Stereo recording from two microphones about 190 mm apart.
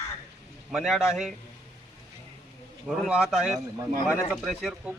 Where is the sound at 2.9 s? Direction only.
Centre (ahead or behind).